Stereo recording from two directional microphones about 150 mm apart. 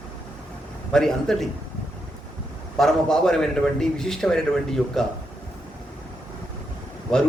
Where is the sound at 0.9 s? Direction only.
5° left (ahead or behind).